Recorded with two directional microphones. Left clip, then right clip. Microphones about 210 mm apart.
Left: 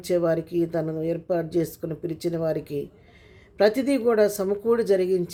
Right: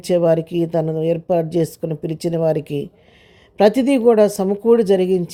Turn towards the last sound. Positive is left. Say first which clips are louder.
# right 6 dB
turn(degrees=-30)  # may be behind; listen again after turning